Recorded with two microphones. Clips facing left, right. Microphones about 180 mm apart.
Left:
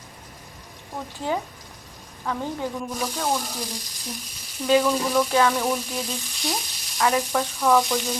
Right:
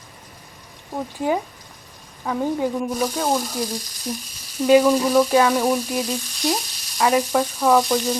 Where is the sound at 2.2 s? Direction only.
15° right (ahead or behind).